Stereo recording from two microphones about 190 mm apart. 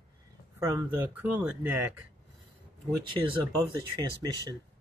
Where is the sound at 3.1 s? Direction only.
25° right (ahead or behind).